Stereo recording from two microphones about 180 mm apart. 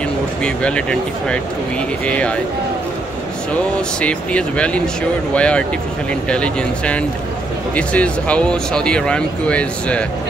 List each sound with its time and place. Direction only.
0.4 s speech: 5° left (ahead or behind)
4.0 s speech: 5° left (ahead or behind)